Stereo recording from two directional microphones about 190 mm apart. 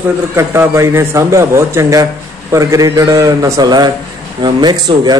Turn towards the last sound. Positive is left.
turn(degrees=-20)  # may be behind; listen again after turning